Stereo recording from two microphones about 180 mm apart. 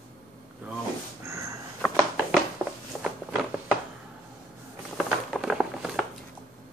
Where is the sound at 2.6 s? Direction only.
5° right (ahead or behind).